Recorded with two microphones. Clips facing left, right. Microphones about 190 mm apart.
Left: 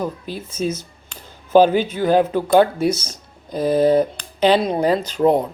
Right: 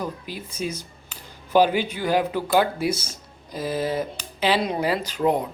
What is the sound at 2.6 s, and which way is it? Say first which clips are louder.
Speech: left 6 dB; 25° left (ahead or behind).